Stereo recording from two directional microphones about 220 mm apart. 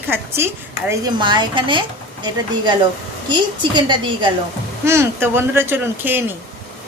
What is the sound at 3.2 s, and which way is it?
A woman's voice, 20° right (ahead or behind).